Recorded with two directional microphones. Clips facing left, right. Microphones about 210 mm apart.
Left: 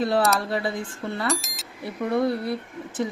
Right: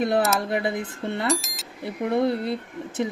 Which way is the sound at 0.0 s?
20° right (ahead or behind).